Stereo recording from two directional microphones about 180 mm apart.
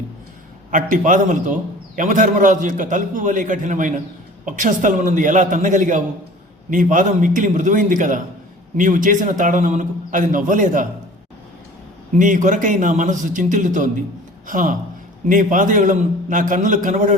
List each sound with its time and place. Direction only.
0.7 s a man's voice: 45° right (ahead or behind)
12.1 s a man's voice: 45° right (ahead or behind)